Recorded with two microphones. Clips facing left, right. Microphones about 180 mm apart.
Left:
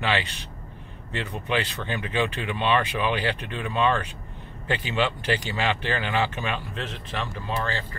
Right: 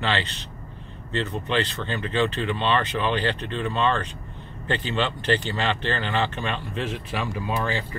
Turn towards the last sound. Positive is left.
turn(degrees=-15)  # may be behind; listen again after turning